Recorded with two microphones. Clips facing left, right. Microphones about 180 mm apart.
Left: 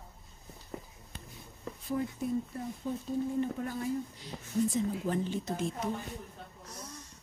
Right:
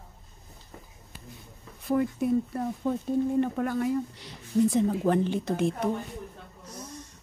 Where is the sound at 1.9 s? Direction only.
70° right (ahead or behind).